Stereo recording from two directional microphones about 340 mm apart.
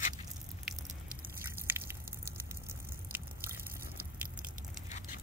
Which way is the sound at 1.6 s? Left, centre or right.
Centre.